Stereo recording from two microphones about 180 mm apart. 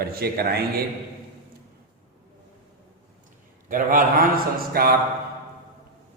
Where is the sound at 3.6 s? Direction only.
50° right (ahead or behind).